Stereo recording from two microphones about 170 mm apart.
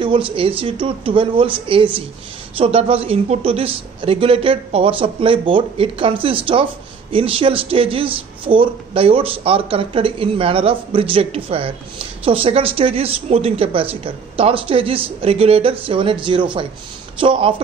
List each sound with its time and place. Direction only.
0.0 s speech: 30° right (ahead or behind)